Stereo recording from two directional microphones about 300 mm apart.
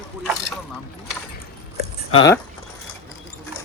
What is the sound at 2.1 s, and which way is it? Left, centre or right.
Speech, centre.